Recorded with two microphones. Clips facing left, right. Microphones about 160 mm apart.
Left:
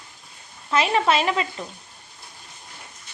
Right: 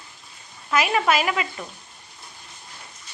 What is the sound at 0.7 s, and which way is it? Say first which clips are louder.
Speech: left 1 dB; 30° left (ahead or behind).